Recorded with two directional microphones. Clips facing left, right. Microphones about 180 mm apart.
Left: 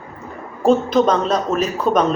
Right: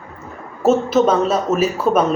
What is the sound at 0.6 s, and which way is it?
A man's voice, 5° right (ahead or behind).